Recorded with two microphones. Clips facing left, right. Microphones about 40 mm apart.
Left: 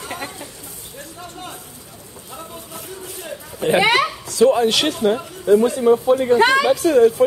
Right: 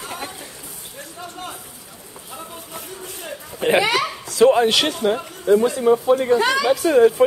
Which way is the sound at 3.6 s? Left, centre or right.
Right.